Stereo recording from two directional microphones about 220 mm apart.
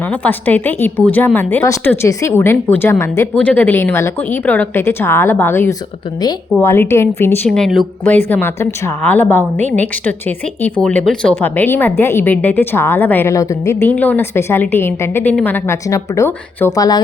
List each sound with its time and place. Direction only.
0.1 s speech: 10° left (ahead or behind)
9.7 s speech: 5° left (ahead or behind)